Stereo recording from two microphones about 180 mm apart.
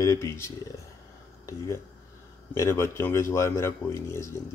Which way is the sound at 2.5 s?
15° left (ahead or behind).